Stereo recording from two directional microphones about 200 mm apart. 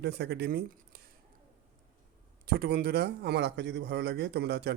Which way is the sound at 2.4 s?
50° right (ahead or behind).